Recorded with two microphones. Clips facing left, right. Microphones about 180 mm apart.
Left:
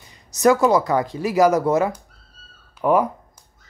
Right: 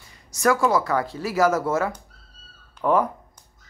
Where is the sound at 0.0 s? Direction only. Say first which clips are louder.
Left 5 dB; 20° left (ahead or behind).